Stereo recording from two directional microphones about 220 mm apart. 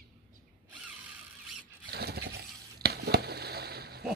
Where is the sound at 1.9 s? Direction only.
45° right (ahead or behind).